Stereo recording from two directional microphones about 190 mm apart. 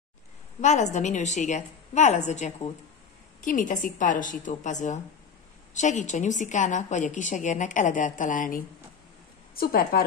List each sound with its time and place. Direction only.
0.6 s a woman's voice: 40° left (ahead or behind)